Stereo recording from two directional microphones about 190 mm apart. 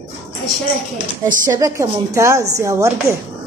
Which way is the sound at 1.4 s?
20° right (ahead or behind).